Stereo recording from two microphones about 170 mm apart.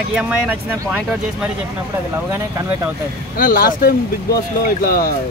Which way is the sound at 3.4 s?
55° left (ahead or behind).